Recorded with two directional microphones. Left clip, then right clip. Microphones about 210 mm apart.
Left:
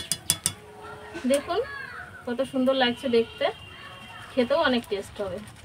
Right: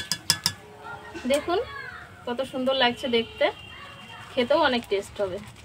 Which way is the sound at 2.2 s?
45° right (ahead or behind).